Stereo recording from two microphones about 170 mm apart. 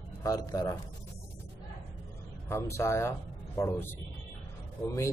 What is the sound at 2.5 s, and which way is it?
Speech, 15° left (ahead or behind).